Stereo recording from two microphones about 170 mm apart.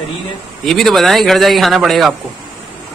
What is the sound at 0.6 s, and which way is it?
A man's voice, centre (ahead or behind).